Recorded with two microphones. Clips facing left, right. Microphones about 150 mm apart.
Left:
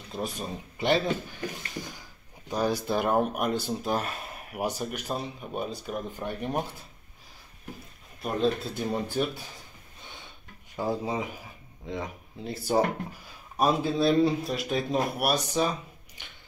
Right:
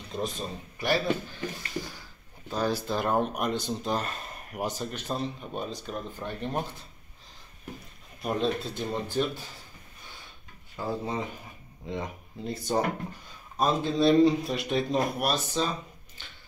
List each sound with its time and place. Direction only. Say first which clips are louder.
0.1 s speech: even; 10° left (ahead or behind)
8.2 s speech: even; centre (ahead or behind)
8.7 s speech: left 1 dB; 10° left (ahead or behind)
10.8 s speech: left 2 dB; 10° left (ahead or behind)